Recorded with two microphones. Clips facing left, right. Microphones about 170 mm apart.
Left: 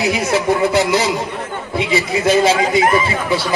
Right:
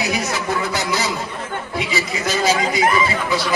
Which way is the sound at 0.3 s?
25° left (ahead or behind).